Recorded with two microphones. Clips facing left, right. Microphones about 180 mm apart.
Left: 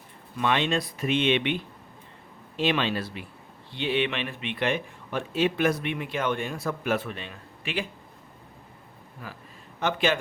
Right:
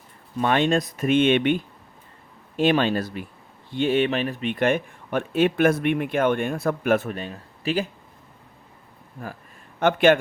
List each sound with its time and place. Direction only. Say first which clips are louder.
0.3 s speech: right 5 dB; 45° right (ahead or behind)
9.2 s speech: right 6 dB; 45° right (ahead or behind)